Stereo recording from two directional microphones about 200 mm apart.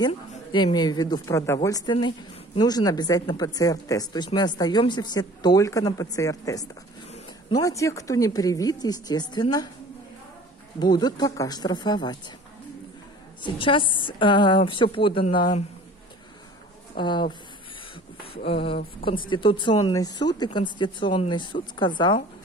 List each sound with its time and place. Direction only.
0.5 s a woman's voice: 25° left (ahead or behind)
10.8 s a woman's voice: 20° left (ahead or behind)
13.4 s a woman's voice: 25° left (ahead or behind)
16.9 s a woman's voice: 20° left (ahead or behind)
18.5 s a woman's voice: 25° left (ahead or behind)